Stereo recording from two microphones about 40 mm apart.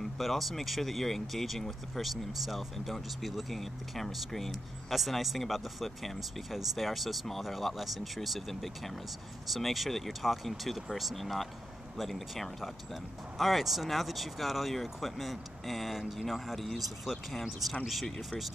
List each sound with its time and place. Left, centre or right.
0.0 s speech: centre
18.0 s speech: centre